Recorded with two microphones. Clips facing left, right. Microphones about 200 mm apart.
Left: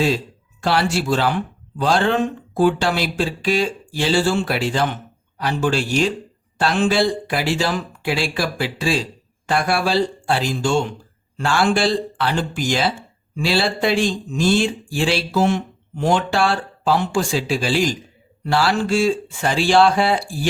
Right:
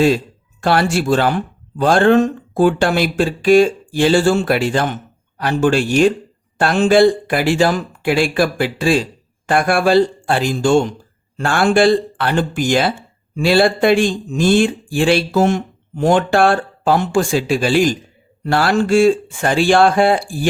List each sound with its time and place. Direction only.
0.6 s speech: 50° right (ahead or behind)